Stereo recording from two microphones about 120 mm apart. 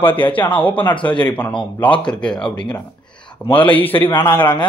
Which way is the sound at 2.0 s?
10° left (ahead or behind).